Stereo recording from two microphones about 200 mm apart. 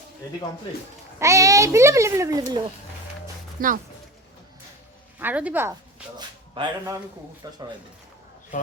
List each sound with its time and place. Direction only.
1.2 s a child's voice: 15° right (ahead or behind)
3.6 s speech: 45° right (ahead or behind)
5.2 s a child's voice: 5° right (ahead or behind)
6.1 s a sound: 20° right (ahead or behind)
7.4 s speech: 20° right (ahead or behind)